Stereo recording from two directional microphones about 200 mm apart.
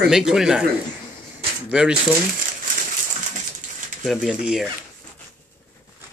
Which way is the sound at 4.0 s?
Centre (ahead or behind).